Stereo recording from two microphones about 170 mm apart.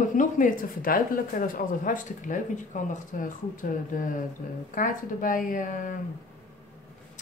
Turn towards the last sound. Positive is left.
turn(degrees=50)  # may be behind; listen again after turning